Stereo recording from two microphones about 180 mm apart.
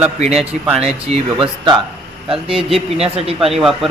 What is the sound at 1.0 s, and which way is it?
Speech, 25° right (ahead or behind).